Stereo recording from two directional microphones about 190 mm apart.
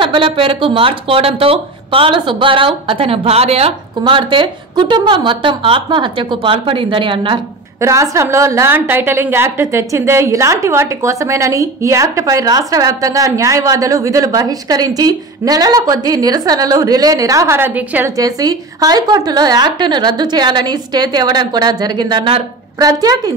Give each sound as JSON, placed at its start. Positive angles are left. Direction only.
{"t": 0.0, "sound": "a woman's voice", "side_deg": -25}
{"t": 7.8, "sound": "a woman's voice", "side_deg": -15}